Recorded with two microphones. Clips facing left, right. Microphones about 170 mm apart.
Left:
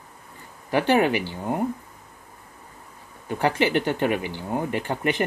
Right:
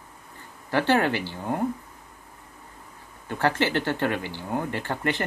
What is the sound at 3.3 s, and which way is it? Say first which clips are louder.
Speech: left 2 dB; 15° left (ahead or behind).